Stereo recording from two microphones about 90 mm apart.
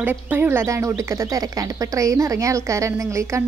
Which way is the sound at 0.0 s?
20° right (ahead or behind).